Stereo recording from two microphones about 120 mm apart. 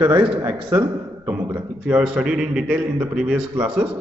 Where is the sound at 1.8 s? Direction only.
5° right (ahead or behind).